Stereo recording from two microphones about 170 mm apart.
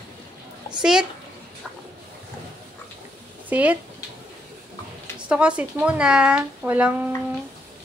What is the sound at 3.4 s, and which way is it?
Speech, 10° right (ahead or behind).